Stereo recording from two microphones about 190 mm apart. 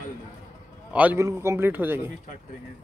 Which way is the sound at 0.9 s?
10° right (ahead or behind).